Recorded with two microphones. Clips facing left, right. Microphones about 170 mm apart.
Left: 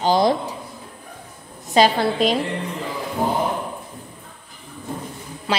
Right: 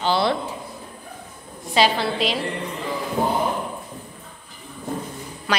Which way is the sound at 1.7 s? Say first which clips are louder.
Left 3 dB; 45° left (ahead or behind).